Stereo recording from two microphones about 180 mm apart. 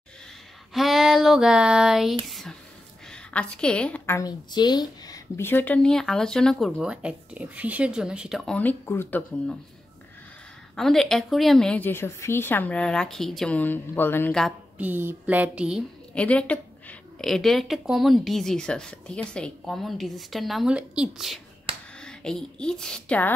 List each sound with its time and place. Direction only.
0.7 s female singing: centre (ahead or behind)
2.2 s a woman's voice: centre (ahead or behind)
10.8 s a woman's voice: centre (ahead or behind)
14.8 s a sound: 10° right (ahead or behind)
16.2 s a woman's voice: 5° left (ahead or behind)
21.7 s a sound: 30° right (ahead or behind)
22.0 s a woman's voice: 5° left (ahead or behind)